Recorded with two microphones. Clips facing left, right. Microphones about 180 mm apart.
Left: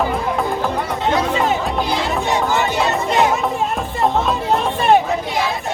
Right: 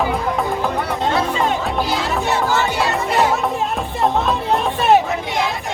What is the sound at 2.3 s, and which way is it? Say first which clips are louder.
Music: left 1 dB; 20° left (ahead or behind).